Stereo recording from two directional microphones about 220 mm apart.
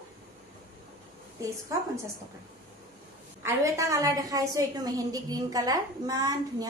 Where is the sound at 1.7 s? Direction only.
15° right (ahead or behind).